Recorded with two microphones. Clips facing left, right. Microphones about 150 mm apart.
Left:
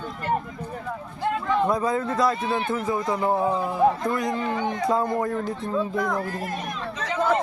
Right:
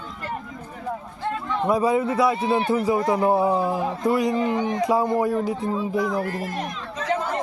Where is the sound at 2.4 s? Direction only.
30° right (ahead or behind).